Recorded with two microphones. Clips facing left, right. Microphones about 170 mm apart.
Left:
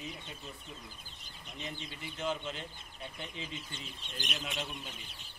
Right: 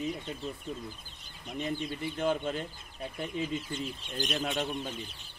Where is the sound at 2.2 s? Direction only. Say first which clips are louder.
Right 6 dB; 50° right (ahead or behind).